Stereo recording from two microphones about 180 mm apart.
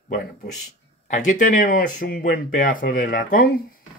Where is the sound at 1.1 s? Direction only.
45° left (ahead or behind).